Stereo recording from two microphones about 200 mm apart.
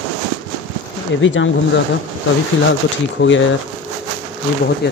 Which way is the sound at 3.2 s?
65° left (ahead or behind).